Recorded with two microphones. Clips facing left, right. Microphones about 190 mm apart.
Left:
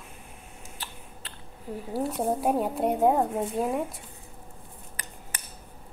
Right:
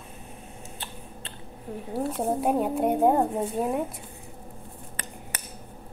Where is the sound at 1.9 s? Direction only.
Centre (ahead or behind).